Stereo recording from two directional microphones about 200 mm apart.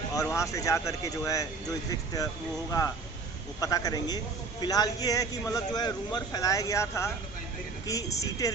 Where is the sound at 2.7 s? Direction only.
15° left (ahead or behind).